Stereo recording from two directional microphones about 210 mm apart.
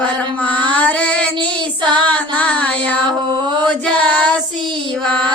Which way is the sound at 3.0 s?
20° right (ahead or behind).